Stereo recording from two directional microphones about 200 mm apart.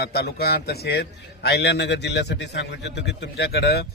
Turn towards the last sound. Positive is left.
turn(degrees=55)  # may be behind; listen again after turning